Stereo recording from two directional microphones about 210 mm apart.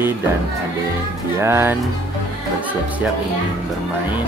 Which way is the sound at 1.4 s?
10° right (ahead or behind).